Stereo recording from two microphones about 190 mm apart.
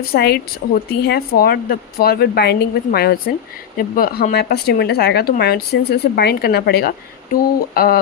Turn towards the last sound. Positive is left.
turn(degrees=55)  # may be behind; listen again after turning